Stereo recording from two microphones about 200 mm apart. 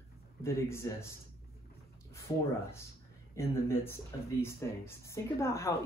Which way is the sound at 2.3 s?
20° left (ahead or behind).